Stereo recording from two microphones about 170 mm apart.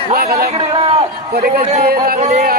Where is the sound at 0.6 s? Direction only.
35° right (ahead or behind).